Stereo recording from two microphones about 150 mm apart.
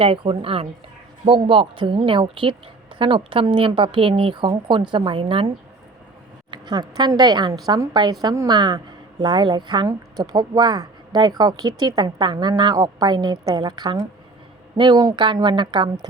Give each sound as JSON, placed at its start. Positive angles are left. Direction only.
{"t": 0.0, "sound": "a woman's voice", "side_deg": -35}
{"t": 6.5, "sound": "a woman's voice", "side_deg": -30}